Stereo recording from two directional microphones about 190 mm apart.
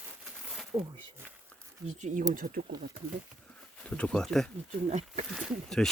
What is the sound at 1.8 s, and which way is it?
Speech, 40° right (ahead or behind).